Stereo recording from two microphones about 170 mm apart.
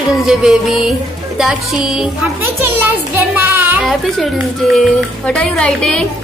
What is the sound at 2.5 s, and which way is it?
Music, 10° right (ahead or behind).